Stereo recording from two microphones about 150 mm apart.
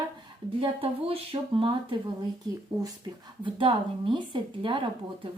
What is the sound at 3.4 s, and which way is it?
Speech, 35° right (ahead or behind).